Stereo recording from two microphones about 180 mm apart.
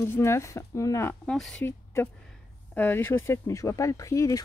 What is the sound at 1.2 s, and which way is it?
Speech, centre (ahead or behind).